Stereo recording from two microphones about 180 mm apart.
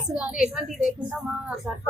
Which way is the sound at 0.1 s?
5° right (ahead or behind).